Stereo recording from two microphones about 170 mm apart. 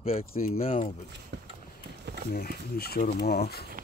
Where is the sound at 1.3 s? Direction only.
90° right.